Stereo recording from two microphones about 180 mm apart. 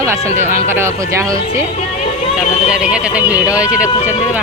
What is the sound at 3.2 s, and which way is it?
Speech, 20° left (ahead or behind).